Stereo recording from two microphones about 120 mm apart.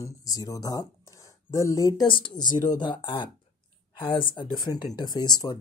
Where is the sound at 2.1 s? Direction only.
40° left (ahead or behind).